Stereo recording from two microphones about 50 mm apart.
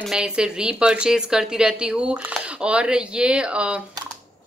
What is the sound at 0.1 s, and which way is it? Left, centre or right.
A woman's voice, centre.